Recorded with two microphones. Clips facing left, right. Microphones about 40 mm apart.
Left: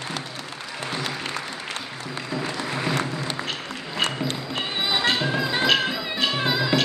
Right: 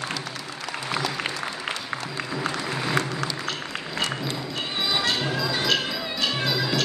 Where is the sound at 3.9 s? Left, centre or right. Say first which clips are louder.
Left 3 dB; left.